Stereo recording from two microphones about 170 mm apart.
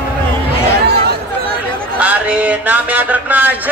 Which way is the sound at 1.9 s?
10° right (ahead or behind).